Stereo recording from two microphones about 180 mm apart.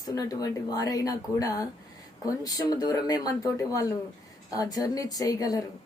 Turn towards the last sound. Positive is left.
turn(degrees=20)  # may be behind; listen again after turning